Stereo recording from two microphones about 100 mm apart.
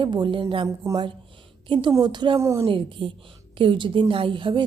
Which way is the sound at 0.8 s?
30° right (ahead or behind).